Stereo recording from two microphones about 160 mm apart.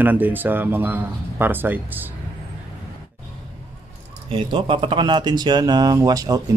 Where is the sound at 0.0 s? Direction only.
10° right (ahead or behind).